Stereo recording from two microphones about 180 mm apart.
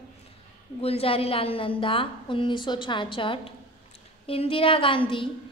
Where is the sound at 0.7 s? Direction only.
35° left (ahead or behind).